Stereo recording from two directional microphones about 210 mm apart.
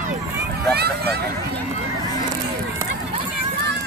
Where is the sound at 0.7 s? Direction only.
50° right (ahead or behind).